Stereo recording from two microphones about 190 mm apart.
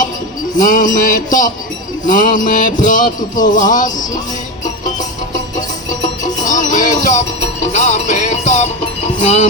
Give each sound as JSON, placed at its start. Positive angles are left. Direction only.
{"t": 0.6, "sound": "music", "side_deg": 45}
{"t": 5.5, "sound": "music", "side_deg": 20}
{"t": 6.4, "sound": "music", "side_deg": 40}